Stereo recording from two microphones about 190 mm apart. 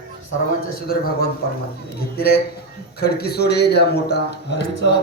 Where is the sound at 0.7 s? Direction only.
50° left (ahead or behind).